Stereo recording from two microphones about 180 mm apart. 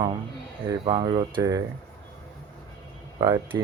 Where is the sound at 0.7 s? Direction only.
25° right (ahead or behind).